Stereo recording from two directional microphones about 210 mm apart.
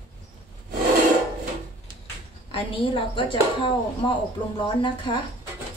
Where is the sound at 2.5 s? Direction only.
25° left (ahead or behind).